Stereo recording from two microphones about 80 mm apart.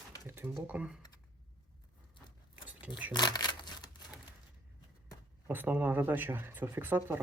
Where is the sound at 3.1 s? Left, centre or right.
Left.